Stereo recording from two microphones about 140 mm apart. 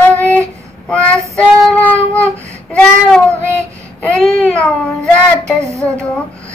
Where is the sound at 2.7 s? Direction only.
10° left (ahead or behind).